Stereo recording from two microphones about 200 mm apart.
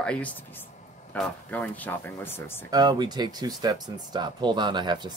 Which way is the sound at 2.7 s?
20° right (ahead or behind).